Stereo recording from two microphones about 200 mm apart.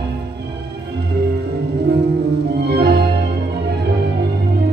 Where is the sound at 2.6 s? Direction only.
55° right (ahead or behind).